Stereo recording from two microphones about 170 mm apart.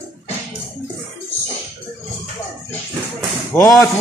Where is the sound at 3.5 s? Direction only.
15° left (ahead or behind).